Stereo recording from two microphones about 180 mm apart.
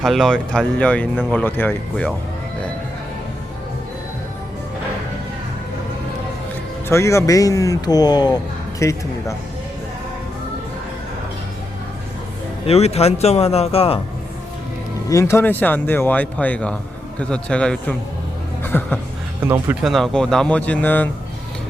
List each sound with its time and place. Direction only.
0.0 s speech: centre (ahead or behind)
6.8 s speech: 15° left (ahead or behind)
12.6 s speech: 35° left (ahead or behind)
15.1 s speech: 15° left (ahead or behind)
18.6 s chuckle: 10° left (ahead or behind)
19.4 s speech: 10° right (ahead or behind); by 21.1 s 10° left (ahead or behind)